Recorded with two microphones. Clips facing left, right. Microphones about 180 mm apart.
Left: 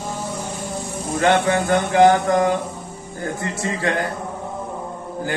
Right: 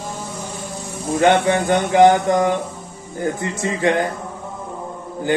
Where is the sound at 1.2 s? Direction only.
20° right (ahead or behind).